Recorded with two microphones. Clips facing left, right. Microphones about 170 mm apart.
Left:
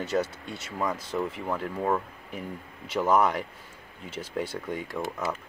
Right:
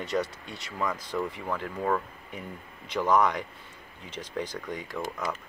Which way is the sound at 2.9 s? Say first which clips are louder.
Left 1 dB; 5° left (ahead or behind).